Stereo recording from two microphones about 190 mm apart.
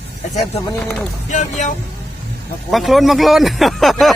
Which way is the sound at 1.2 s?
40° left (ahead or behind).